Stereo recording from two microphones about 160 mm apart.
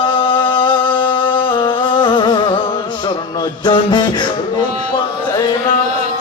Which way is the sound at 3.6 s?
30° left (ahead or behind).